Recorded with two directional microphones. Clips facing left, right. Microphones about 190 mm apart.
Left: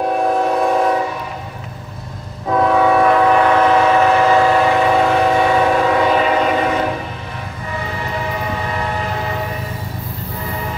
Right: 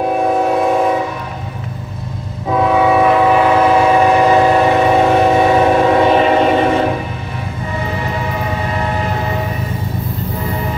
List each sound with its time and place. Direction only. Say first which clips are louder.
0.0 s train: right 2 dB; 5° right (ahead or behind)
2.4 s train: right 1 dB; 5° right (ahead or behind); by 6.9 s 25° right (ahead or behind)